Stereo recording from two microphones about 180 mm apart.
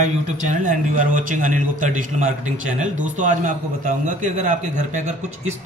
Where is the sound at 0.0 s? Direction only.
45° right (ahead or behind).